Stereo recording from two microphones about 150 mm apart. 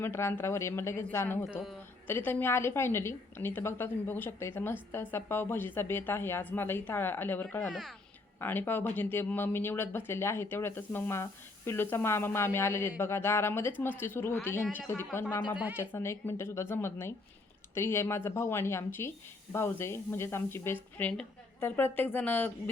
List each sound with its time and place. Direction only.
0.0 s a woman's voice: 15° left (ahead or behind)
7.7 s speech: centre (ahead or behind)
8.4 s a woman's voice: 15° left (ahead or behind)
15.5 s a woman's voice: 10° right (ahead or behind)
15.8 s a woman's voice: 15° left (ahead or behind)